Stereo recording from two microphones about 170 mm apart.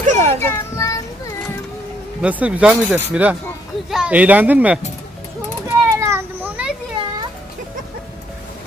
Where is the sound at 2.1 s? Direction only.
10° right (ahead or behind).